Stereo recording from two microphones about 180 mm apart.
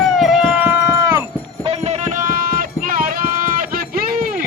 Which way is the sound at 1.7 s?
40° right (ahead or behind).